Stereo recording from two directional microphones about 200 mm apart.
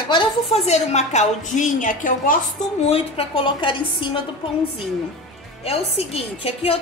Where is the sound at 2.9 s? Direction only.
25° left (ahead or behind).